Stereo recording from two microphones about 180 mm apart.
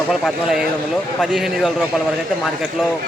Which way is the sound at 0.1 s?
Centre (ahead or behind).